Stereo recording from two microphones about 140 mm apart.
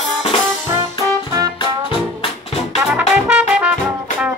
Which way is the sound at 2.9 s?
10° right (ahead or behind).